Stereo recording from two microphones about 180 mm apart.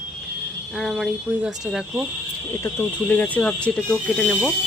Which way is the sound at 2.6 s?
10° left (ahead or behind).